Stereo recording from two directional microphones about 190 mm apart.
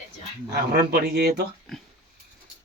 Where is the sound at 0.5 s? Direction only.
55° right (ahead or behind).